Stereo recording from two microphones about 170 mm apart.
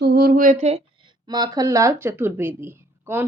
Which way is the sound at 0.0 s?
65° right (ahead or behind).